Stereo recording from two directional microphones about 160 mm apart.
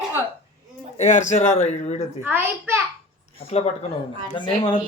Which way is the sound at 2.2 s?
15° right (ahead or behind).